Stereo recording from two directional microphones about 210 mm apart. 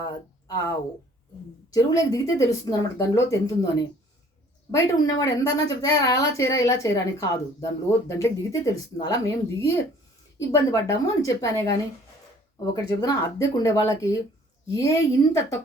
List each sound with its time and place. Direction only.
0.0 s speech: 15° left (ahead or behind)
1.7 s a woman's voice: 15° left (ahead or behind)
4.7 s a woman's voice: 15° left (ahead or behind)
13.0 s a woman's voice: 15° left (ahead or behind)